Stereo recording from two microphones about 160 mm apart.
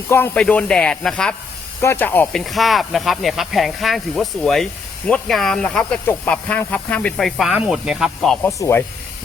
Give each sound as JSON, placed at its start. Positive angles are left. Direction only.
{"t": 0.1, "sound": "speech", "side_deg": 10}
{"t": 8.4, "sound": "speech", "side_deg": 20}